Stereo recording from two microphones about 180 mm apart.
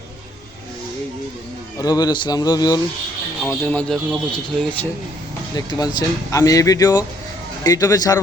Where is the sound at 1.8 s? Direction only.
20° left (ahead or behind).